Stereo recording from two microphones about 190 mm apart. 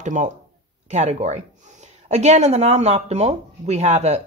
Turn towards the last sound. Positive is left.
turn(degrees=-35)  # may be behind; listen again after turning